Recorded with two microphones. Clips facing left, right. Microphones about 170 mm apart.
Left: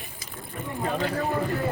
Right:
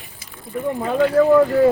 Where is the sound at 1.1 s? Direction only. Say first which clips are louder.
Right 14 dB; 65° right (ahead or behind).